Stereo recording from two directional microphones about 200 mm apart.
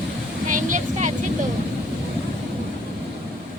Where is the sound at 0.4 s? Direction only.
40° right (ahead or behind).